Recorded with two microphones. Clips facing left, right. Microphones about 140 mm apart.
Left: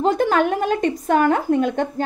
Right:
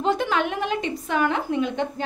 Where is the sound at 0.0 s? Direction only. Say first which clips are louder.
Left 5 dB; 45° left (ahead or behind).